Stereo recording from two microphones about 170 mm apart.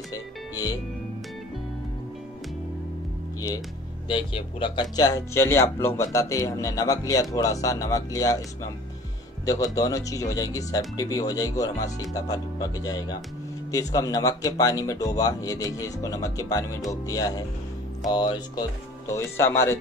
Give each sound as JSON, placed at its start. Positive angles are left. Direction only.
{"t": 0.1, "sound": "music", "side_deg": 20}
{"t": 3.3, "sound": "music", "side_deg": 20}
{"t": 4.1, "sound": "speech", "side_deg": 30}
{"t": 9.5, "sound": "speech", "side_deg": 20}